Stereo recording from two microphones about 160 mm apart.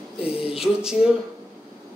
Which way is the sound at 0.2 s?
35° left (ahead or behind).